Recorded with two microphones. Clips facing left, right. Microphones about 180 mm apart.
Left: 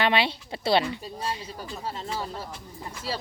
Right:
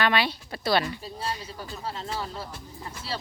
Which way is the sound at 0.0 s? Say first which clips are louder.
Left 1 dB; 25° left (ahead or behind).